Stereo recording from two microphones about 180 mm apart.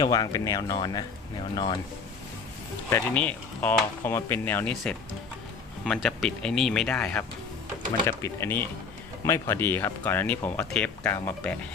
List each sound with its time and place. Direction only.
0.0 s speech: 20° left (ahead or behind)
2.9 s speech: 10° left (ahead or behind)